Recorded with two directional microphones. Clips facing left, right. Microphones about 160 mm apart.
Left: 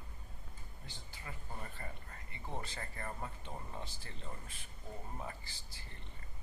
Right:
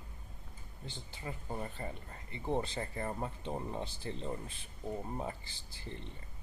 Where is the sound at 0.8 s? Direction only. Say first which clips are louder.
Right 8 dB; 25° right (ahead or behind).